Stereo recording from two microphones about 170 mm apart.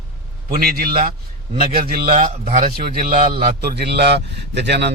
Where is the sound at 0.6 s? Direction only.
60° right (ahead or behind).